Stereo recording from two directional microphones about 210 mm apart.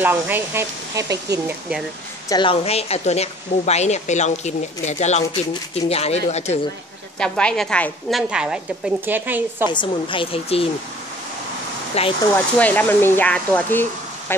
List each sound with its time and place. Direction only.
0.0 s speech: 10° right (ahead or behind)
2.2 s a woman's voice: 20° left (ahead or behind)
7.2 s a woman's voice: 5° left (ahead or behind)
9.7 s a woman's voice: 25° left (ahead or behind)
12.0 s a woman's voice: 30° left (ahead or behind)
12.5 s speech: 10° left (ahead or behind)